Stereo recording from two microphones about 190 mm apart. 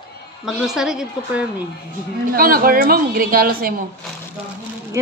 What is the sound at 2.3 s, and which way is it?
A woman's voice, 50° right (ahead or behind).